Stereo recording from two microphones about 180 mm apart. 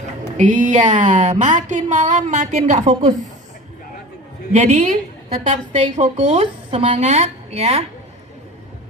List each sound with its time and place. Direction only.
0.3 s speech: 45° right (ahead or behind)
4.5 s speech: 40° right (ahead or behind)